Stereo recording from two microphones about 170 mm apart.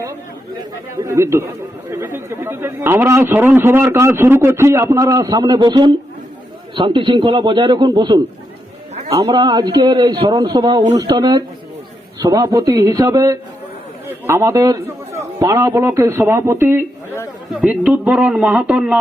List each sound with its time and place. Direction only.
0.9 s a man's voice: 15° right (ahead or behind)